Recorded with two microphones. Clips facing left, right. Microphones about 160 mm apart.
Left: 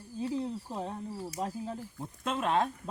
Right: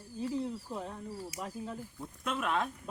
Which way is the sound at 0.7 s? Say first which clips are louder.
Left 3 dB; 30° left (ahead or behind).